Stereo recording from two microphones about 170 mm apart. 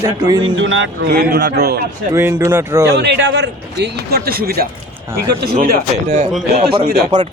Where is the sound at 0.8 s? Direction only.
70° right (ahead or behind).